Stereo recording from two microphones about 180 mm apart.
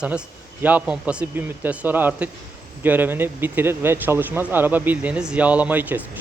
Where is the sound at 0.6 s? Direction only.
10° right (ahead or behind).